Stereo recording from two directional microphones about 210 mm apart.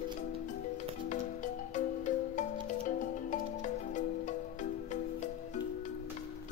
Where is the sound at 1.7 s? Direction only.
35° left (ahead or behind).